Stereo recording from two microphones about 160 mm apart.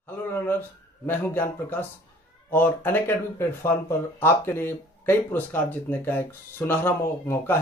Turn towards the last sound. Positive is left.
turn(degrees=15)  # may be behind; listen again after turning